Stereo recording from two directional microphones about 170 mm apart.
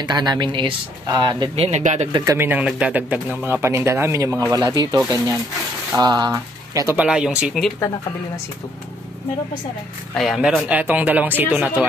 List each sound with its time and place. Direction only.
0.0 s speech: 25° right (ahead or behind); by 2.0 s 45° right (ahead or behind)
2.1 s speech: 15° right (ahead or behind)
7.0 s speech: 5° right (ahead or behind)
10.1 s speech: centre (ahead or behind)